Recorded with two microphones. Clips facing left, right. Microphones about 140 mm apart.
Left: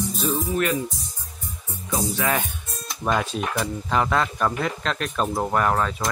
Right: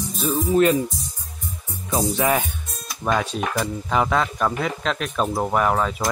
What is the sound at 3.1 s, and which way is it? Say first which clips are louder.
Speech: right 1 dB; centre (ahead or behind).